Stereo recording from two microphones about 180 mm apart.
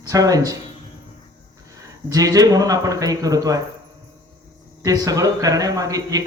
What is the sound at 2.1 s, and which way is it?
Speech, 20° right (ahead or behind).